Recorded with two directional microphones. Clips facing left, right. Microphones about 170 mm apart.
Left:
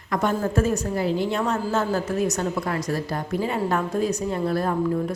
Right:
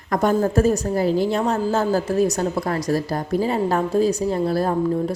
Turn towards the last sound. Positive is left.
turn(degrees=-35)  # may be behind; listen again after turning